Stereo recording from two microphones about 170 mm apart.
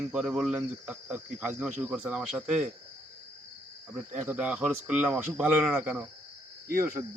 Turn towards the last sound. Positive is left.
turn(degrees=-20)  # may be behind; listen again after turning